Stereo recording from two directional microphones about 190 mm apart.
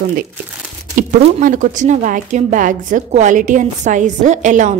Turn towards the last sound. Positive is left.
turn(degrees=-40)  # may be behind; listen again after turning